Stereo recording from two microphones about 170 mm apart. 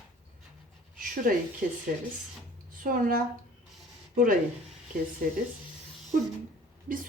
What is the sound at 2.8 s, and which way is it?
Speech, 55° right (ahead or behind).